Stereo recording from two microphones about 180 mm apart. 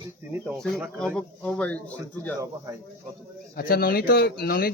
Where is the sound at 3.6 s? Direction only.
55° left (ahead or behind).